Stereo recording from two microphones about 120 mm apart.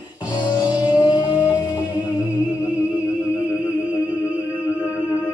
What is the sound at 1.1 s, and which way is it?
Music, 40° left (ahead or behind).